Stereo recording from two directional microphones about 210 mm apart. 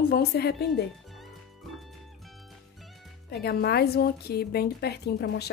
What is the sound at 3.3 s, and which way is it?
A woman's voice, 50° left (ahead or behind).